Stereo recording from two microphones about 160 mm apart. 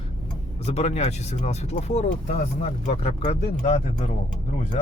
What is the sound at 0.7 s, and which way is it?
Speech, 45° left (ahead or behind).